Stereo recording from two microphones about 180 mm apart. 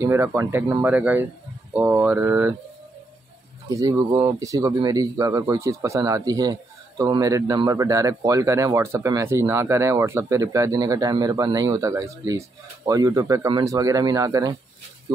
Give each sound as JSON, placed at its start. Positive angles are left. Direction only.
{"t": 0.0, "sound": "speech", "side_deg": -15}
{"t": 3.6, "sound": "speech", "side_deg": -20}